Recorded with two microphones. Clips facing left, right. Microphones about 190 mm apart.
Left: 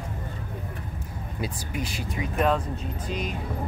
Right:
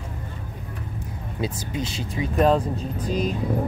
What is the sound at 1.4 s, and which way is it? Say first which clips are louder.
Speech: right 4 dB; 25° right (ahead or behind).